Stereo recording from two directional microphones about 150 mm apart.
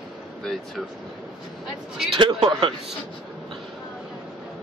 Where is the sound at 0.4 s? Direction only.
Centre (ahead or behind).